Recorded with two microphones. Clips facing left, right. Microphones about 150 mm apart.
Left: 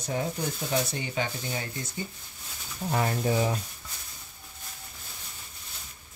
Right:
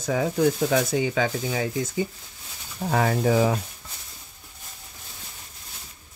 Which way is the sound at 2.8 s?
90° right.